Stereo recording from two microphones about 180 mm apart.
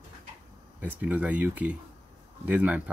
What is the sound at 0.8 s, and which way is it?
Speech, 10° right (ahead or behind).